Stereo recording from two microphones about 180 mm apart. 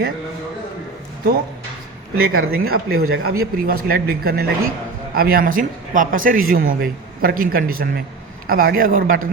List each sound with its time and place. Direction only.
2.1 s speech: 60° right (ahead or behind)